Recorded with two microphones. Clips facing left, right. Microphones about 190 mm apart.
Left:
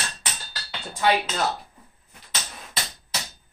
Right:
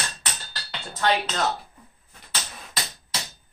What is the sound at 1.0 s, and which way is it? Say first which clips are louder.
Speech: left 1 dB; 10° left (ahead or behind).